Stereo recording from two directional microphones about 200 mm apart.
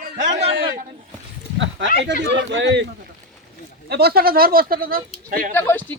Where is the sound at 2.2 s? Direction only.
60° right (ahead or behind).